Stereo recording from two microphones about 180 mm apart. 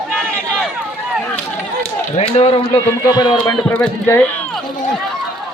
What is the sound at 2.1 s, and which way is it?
Speech, 35° left (ahead or behind).